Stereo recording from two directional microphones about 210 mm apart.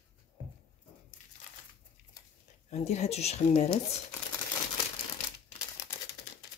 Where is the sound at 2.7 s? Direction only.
30° left (ahead or behind).